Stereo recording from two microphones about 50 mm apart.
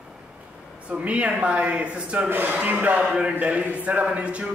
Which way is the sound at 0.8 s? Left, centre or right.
Right.